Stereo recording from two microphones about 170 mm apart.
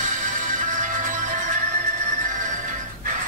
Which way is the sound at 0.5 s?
50° right (ahead or behind).